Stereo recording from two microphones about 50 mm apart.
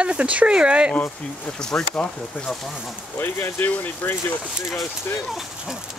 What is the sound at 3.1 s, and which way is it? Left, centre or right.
Speech, left.